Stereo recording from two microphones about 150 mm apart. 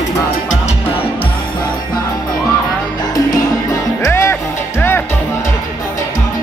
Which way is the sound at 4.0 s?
15° left (ahead or behind).